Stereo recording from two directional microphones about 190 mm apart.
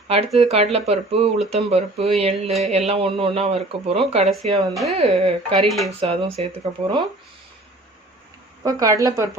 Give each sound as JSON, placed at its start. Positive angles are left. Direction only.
{"t": 0.3, "sound": "speech", "side_deg": -35}
{"t": 4.7, "sound": "speech", "side_deg": 0}
{"t": 4.9, "sound": "speech", "side_deg": -30}
{"t": 5.6, "sound": "speech", "side_deg": 0}
{"t": 6.0, "sound": "speech", "side_deg": -30}
{"t": 8.6, "sound": "a woman's voice", "side_deg": -20}